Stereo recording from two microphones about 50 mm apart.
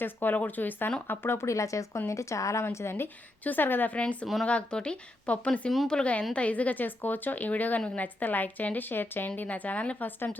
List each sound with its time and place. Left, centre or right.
0.0 s a woman's voice: left
1.5 s speech: left
2.6 s a woman's voice: left
3.9 s a woman's voice: left
9.3 s a woman's voice: left